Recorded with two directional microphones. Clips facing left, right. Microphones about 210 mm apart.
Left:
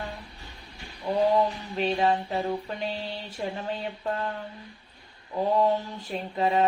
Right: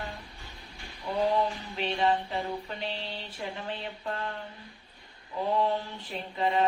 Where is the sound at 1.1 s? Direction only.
40° left (ahead or behind).